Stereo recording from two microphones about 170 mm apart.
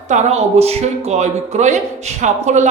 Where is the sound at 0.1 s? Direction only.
40° right (ahead or behind).